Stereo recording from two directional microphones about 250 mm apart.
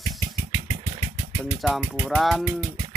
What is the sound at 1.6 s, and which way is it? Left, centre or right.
Music, centre.